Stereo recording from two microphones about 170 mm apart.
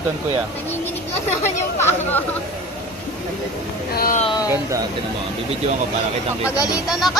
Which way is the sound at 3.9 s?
55° left (ahead or behind).